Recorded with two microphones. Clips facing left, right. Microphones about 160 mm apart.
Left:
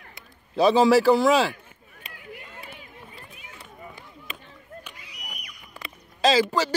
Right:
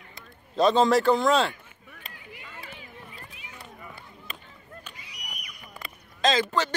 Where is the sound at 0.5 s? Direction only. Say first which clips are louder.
Left 3 dB; 5° left (ahead or behind).